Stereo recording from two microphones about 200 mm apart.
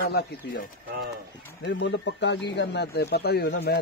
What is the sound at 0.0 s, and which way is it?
Speech, 50° left (ahead or behind).